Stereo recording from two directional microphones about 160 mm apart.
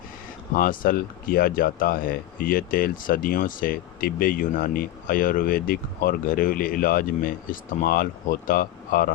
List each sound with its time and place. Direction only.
0.5 s speech: 60° left (ahead or behind)